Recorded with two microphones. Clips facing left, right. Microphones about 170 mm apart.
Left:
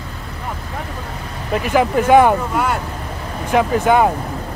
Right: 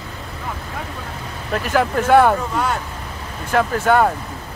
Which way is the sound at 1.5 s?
10° left (ahead or behind).